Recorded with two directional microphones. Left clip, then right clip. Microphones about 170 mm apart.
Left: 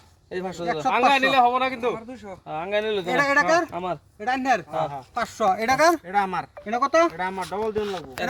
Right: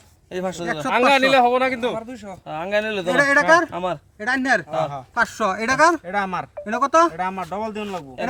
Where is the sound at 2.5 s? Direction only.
40° right (ahead or behind).